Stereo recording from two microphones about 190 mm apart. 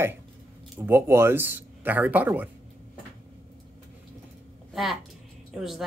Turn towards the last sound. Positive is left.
turn(degrees=0)  # may be behind; listen again after turning